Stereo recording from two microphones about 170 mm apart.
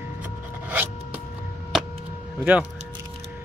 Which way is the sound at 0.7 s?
10° right (ahead or behind).